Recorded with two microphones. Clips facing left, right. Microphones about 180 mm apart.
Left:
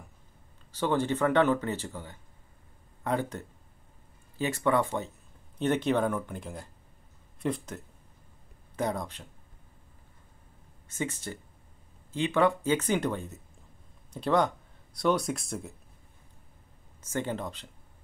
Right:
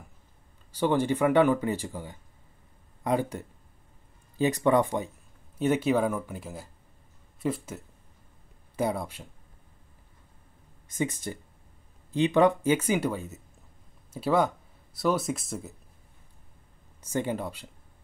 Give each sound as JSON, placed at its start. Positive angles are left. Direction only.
{"t": 0.7, "sound": "speech", "side_deg": -15}
{"t": 10.9, "sound": "speech", "side_deg": -10}
{"t": 17.1, "sound": "speech", "side_deg": -10}